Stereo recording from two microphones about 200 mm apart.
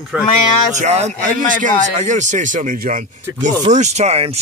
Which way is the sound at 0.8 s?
35° right (ahead or behind).